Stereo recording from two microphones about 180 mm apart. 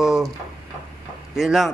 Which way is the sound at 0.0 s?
Centre (ahead or behind).